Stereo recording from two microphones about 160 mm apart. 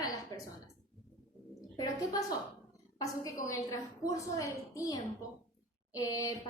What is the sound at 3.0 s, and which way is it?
A woman's voice, 20° left (ahead or behind).